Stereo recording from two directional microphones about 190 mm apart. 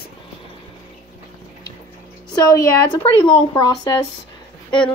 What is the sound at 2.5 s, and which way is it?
Speech, 20° left (ahead or behind).